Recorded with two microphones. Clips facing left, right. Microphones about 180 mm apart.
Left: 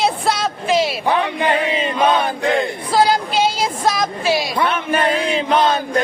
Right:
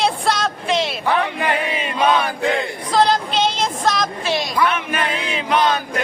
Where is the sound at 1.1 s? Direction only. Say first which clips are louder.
Even; 20° left (ahead or behind).